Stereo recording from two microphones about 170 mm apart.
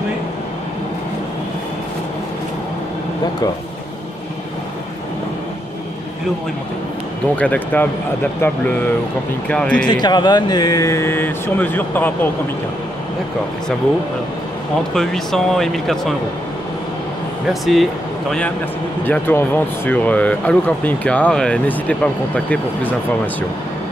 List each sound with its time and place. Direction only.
7.3 s speech: 10° left (ahead or behind)
9.5 s speech: 5° left (ahead or behind)
9.8 s speech: 25° left (ahead or behind)
15.0 s speech: centre (ahead or behind)
17.5 s speech: centre (ahead or behind)
19.0 s speech: 10° left (ahead or behind)